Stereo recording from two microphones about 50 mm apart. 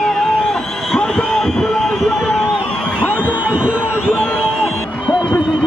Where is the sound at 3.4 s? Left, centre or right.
Right.